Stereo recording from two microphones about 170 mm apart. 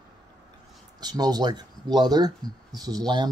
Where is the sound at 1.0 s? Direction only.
20° right (ahead or behind).